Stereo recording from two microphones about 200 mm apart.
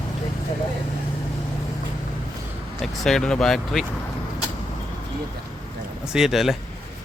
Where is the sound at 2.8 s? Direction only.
Centre (ahead or behind).